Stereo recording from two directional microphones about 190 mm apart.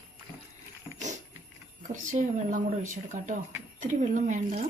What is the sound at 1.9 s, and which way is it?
Speech, 40° right (ahead or behind).